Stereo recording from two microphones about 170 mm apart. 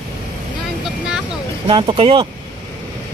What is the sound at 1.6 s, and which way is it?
Speech, 30° right (ahead or behind).